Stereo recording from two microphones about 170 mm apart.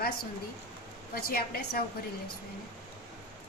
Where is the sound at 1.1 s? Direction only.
65° left (ahead or behind).